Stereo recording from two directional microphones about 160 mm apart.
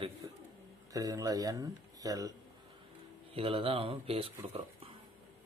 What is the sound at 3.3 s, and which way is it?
Speech, 35° right (ahead or behind).